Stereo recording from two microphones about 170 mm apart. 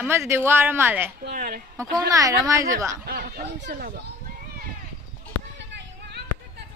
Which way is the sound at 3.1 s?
65° right (ahead or behind).